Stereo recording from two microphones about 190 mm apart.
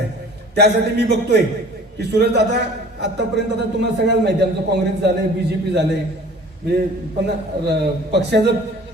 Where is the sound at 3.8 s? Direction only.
60° right (ahead or behind).